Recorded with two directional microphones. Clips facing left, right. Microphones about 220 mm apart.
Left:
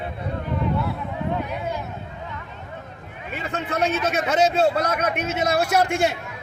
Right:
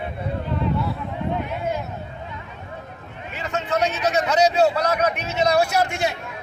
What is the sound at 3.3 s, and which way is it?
A man's voice, 55° left (ahead or behind).